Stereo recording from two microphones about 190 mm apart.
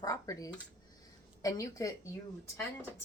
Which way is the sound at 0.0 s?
20° left (ahead or behind).